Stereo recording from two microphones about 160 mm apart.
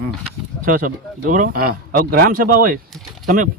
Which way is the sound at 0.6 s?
55° right (ahead or behind).